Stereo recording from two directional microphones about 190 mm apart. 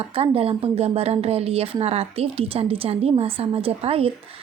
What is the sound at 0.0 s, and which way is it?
A woman's voice, 30° right (ahead or behind).